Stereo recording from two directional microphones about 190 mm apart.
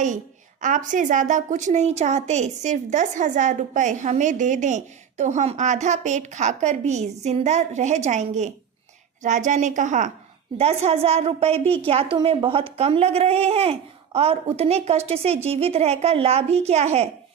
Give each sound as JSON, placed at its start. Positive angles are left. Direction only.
{"t": 0.6, "sound": "a woman's voice", "side_deg": -40}